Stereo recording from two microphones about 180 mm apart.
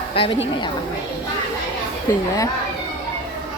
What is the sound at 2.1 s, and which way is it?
Speech, 15° left (ahead or behind).